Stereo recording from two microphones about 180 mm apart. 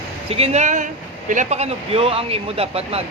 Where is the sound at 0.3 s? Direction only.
35° right (ahead or behind).